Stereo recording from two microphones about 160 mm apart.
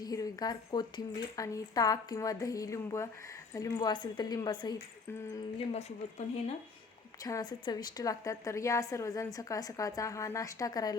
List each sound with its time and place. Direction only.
0.0 s a woman's voice: 25° left (ahead or behind)
5.5 s speech: 40° left (ahead or behind)
7.2 s a woman's voice: 20° left (ahead or behind)